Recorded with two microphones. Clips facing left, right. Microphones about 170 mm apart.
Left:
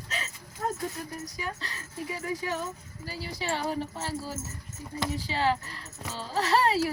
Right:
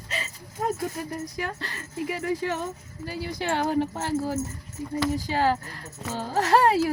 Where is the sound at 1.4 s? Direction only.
65° right (ahead or behind).